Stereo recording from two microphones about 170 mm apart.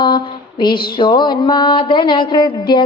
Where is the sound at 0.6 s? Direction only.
25° left (ahead or behind).